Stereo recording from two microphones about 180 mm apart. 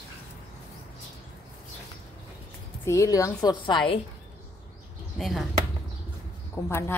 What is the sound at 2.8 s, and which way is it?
A woman's voice, 15° left (ahead or behind).